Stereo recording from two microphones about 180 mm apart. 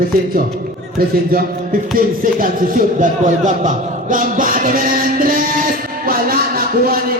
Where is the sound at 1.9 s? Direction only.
50° right (ahead or behind).